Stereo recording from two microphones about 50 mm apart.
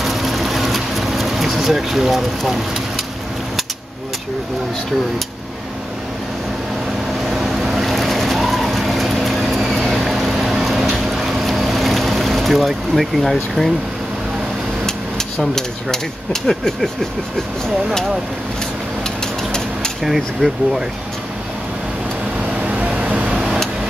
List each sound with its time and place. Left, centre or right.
0.0 s vehicle: centre
1.6 s speech: centre
7.2 s vehicle: centre
14.9 s speech: centre
20.0 s speech: centre
22.8 s vehicle: right